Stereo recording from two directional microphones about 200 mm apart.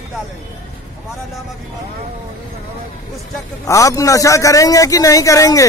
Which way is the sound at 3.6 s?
15° left (ahead or behind).